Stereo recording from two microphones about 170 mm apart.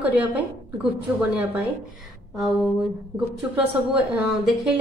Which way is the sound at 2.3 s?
Centre (ahead or behind).